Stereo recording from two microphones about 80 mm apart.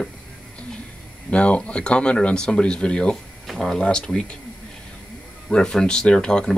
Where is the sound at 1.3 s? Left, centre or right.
Centre.